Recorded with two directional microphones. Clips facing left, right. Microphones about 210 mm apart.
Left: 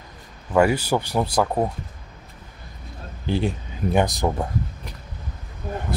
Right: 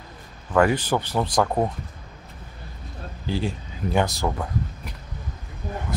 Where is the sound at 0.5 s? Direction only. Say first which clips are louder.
Left 1 dB; 10° left (ahead or behind).